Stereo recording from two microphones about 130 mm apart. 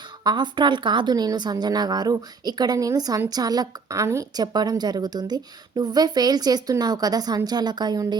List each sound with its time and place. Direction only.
0.3 s a woman's voice: 35° right (ahead or behind)